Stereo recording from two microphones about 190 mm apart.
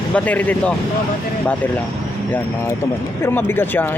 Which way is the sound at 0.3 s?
10° left (ahead or behind).